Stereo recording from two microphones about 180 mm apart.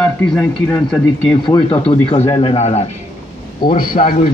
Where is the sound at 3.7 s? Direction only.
50° left (ahead or behind).